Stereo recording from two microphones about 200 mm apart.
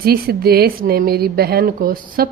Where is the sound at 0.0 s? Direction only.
50° right (ahead or behind).